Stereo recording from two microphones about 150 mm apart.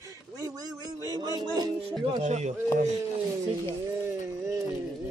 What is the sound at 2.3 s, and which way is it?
Speech, 50° right (ahead or behind).